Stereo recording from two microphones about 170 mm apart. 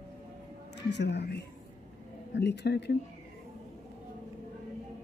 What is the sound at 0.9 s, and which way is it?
Speech, 90° left.